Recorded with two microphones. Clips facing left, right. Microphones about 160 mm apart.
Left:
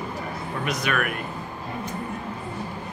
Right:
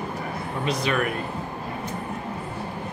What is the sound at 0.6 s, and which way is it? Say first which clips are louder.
Speech: right 2 dB; 30° right (ahead or behind).